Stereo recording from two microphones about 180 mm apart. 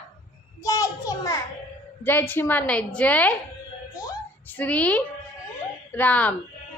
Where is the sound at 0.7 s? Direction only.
15° left (ahead or behind).